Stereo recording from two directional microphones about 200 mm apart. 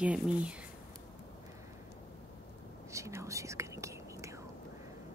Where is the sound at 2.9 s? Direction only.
15° right (ahead or behind).